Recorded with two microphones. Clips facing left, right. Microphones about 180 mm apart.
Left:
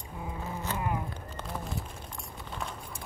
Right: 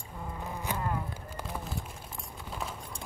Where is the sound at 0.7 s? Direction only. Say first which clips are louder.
Even; 15° right (ahead or behind).